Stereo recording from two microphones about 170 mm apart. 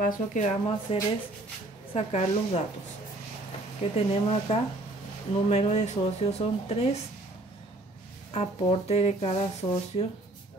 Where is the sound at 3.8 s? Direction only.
35° left (ahead or behind).